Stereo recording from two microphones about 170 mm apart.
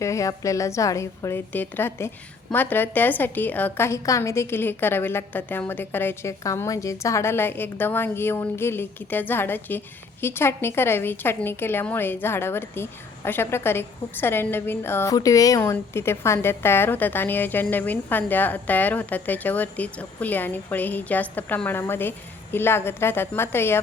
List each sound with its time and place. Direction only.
0.0 s a woman's voice: 20° left (ahead or behind)